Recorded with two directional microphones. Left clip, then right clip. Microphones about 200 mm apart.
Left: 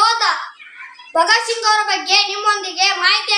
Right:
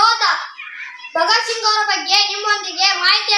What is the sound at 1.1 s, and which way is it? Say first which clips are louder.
A child's voice: left 1 dB; 15° left (ahead or behind).